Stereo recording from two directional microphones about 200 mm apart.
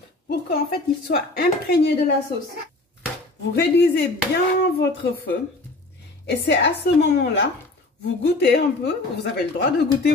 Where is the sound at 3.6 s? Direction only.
55° left (ahead or behind).